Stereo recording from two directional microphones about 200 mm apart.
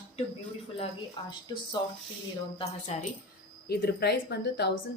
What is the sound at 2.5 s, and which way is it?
Speech, 30° left (ahead or behind).